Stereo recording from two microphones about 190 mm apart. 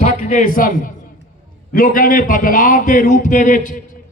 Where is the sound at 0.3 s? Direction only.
45° left (ahead or behind).